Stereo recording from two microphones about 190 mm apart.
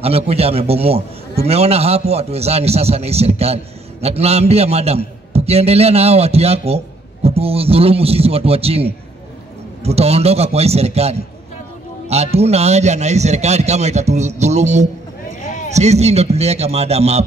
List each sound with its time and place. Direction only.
0.0 s a man's voice: 30° right (ahead or behind)
15.4 s a sound: 40° left (ahead or behind)
15.7 s a man's voice: 35° right (ahead or behind)